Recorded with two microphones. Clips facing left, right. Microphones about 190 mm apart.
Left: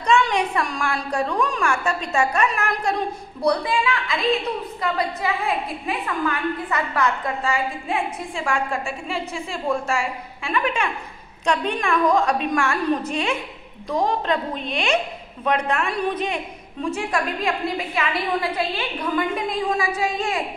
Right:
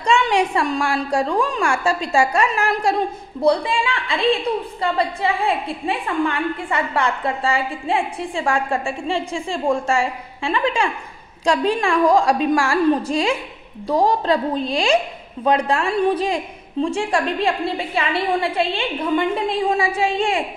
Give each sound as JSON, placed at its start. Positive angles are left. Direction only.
{"t": 0.0, "sound": "a woman's voice", "side_deg": -30}